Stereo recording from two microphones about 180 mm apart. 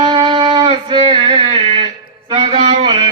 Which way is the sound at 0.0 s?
25° right (ahead or behind).